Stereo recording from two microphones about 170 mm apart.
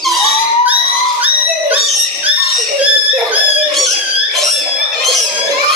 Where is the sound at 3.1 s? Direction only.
5° right (ahead or behind).